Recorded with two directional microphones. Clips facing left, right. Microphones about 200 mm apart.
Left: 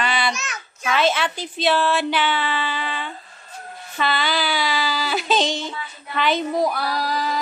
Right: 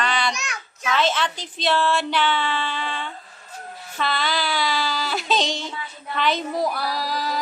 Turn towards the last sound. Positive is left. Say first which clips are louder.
# left 2 dB
turn(degrees=0)  # may be behind; listen again after turning